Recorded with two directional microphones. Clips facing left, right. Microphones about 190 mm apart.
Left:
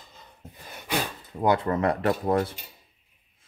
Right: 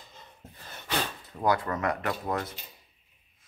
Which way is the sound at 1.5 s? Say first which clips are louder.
Left 4 dB; 25° left (ahead or behind).